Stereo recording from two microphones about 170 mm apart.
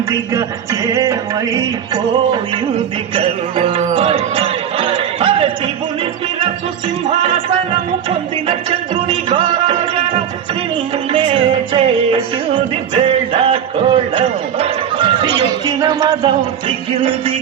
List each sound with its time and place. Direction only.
0.1 s music: 20° right (ahead or behind)
2.3 s music: 30° right (ahead or behind)
8.1 s music: 35° right (ahead or behind)
11.1 s music: 30° right (ahead or behind)